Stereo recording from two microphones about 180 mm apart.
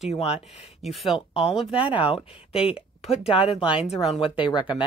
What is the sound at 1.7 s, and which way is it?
Speech, 30° left (ahead or behind).